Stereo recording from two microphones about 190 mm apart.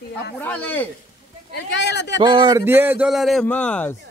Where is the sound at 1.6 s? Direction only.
65° left (ahead or behind).